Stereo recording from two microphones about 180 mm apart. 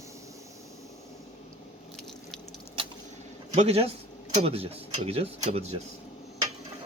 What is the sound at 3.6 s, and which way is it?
Speech, 35° right (ahead or behind).